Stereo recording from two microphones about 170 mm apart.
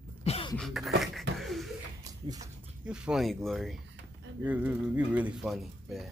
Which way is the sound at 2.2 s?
20° right (ahead or behind).